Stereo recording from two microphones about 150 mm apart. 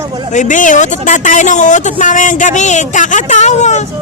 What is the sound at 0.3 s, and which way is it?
Speech, 55° left (ahead or behind).